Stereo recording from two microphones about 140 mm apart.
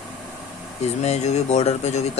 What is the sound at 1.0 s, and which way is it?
Speech, 55° left (ahead or behind).